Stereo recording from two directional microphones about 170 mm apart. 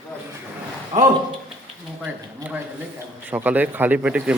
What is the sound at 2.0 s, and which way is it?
Speech, 10° right (ahead or behind).